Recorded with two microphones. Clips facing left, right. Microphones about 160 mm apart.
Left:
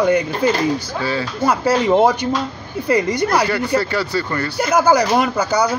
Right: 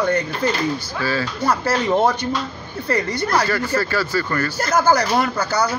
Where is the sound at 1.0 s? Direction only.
25° left (ahead or behind).